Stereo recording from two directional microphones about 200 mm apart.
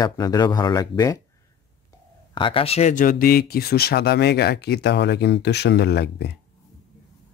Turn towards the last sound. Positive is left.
turn(degrees=55)  # may be behind; listen again after turning